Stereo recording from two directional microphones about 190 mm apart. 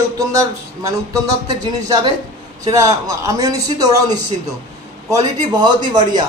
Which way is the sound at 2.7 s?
20° right (ahead or behind).